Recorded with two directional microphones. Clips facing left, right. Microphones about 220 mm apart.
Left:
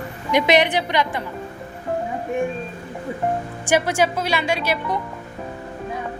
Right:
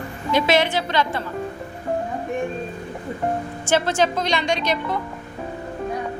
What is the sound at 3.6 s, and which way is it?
A woman's voice, 10° left (ahead or behind).